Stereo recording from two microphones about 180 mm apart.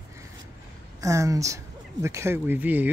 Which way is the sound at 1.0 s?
20° right (ahead or behind).